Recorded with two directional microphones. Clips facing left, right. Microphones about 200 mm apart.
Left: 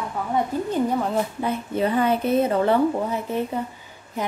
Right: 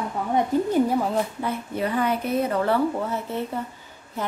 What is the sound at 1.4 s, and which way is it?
A woman's voice, 25° left (ahead or behind).